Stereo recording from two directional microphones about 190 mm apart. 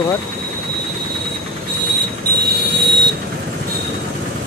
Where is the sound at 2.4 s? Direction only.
55° right (ahead or behind).